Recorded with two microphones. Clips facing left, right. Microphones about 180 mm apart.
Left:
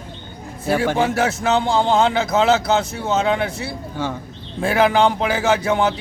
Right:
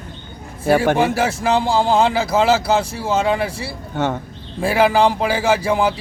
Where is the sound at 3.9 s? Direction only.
65° right (ahead or behind).